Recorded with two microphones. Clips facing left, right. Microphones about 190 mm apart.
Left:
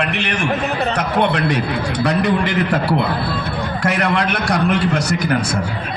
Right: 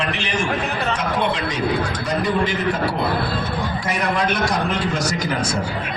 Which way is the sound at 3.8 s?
70° left (ahead or behind).